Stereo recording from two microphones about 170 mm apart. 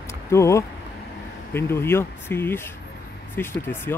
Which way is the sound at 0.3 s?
15° left (ahead or behind).